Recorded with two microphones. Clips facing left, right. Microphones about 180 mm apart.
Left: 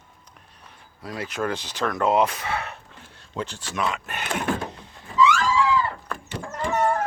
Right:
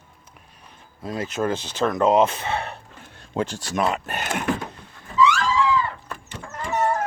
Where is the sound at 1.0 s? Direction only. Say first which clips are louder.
Right 3 dB; 25° right (ahead or behind).